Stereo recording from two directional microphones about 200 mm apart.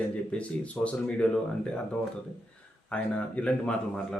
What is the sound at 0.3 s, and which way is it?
Speech, 5° left (ahead or behind).